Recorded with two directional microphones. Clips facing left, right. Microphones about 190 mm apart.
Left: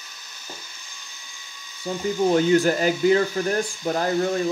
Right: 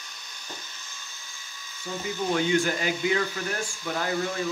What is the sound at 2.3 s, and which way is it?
Speech, 40° left (ahead or behind).